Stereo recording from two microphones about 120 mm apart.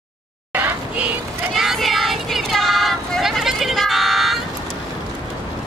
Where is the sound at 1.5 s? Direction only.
Centre (ahead or behind).